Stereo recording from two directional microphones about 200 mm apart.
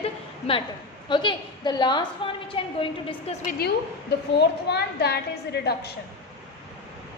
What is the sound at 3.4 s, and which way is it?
A woman's voice, 50° left (ahead or behind).